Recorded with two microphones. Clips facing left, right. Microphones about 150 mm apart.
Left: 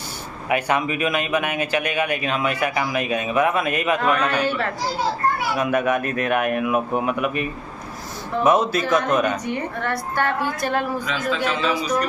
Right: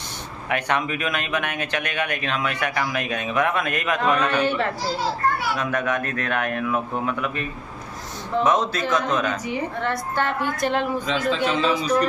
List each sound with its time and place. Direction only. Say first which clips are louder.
0.5 s speech: left 3 dB; 5° left (ahead or behind)
5.6 s speech: left 4 dB; 10° left (ahead or behind)
9.8 s a woman's voice: even; 20° right (ahead or behind)
11.1 s a man's voice: right 2 dB; 30° right (ahead or behind)